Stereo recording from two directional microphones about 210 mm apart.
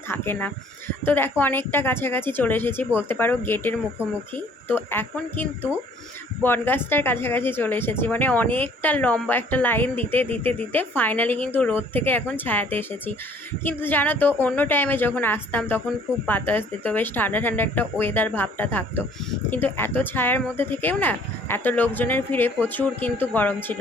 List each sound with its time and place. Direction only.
0.1 s a woman's voice: 10° left (ahead or behind)